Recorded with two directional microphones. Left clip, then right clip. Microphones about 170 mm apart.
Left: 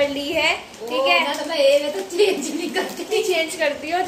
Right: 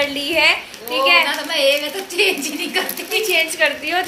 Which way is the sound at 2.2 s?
20° left (ahead or behind).